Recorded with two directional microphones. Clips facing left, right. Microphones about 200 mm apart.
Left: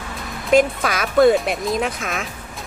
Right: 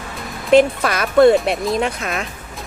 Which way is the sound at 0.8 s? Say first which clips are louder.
Right 3 dB; centre (ahead or behind).